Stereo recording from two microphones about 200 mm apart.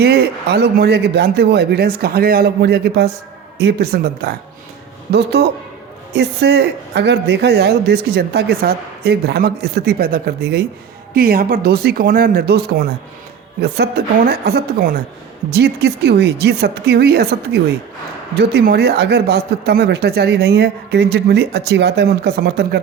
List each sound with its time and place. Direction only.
0.0 s speech: 50° right (ahead or behind)